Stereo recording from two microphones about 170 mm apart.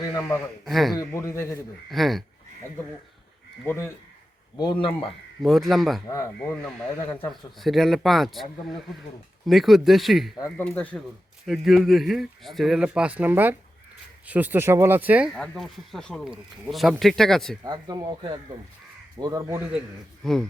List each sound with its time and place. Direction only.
0.1 s speech: 15° left (ahead or behind)
0.6 s speech: centre (ahead or behind)
0.9 s speech: 15° left (ahead or behind)
1.9 s speech: centre (ahead or behind)
3.6 s speech: 15° left (ahead or behind)
4.5 s speech: 25° left (ahead or behind)
5.4 s speech: centre (ahead or behind)
6.1 s speech: 15° left (ahead or behind)
7.6 s speech: centre (ahead or behind)
15.4 s speech: centre (ahead or behind)
17.6 s speech: 25° right (ahead or behind)
20.2 s speech: 5° left (ahead or behind)